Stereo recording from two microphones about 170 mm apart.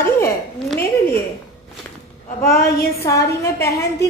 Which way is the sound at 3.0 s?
15° left (ahead or behind).